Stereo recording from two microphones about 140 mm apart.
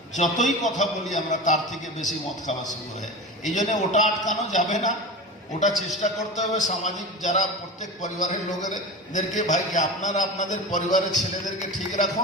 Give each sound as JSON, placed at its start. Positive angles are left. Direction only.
{"t": 0.2, "sound": "a man's voice", "side_deg": 60}
{"t": 6.0, "sound": "a man's voice", "side_deg": 55}